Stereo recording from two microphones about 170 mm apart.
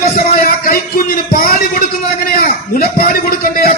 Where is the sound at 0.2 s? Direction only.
60° left (ahead or behind).